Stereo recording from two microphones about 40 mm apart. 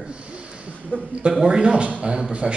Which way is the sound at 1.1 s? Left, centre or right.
Right.